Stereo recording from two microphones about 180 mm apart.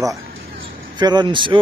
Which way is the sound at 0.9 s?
25° right (ahead or behind).